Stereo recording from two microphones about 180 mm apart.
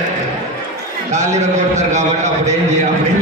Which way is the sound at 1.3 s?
40° right (ahead or behind).